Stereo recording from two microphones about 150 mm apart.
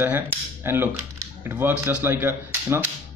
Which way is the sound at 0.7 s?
15° right (ahead or behind).